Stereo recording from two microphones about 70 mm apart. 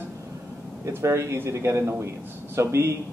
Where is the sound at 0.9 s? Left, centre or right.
Right.